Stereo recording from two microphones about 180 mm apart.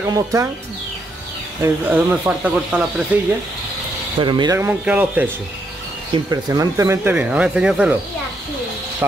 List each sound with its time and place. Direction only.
0.0 s speech: 15° right (ahead or behind)
1.6 s speech: 10° right (ahead or behind)
4.2 s speech: 25° right (ahead or behind)
4.6 s speech: 10° right (ahead or behind)
6.1 s speech: 20° right (ahead or behind)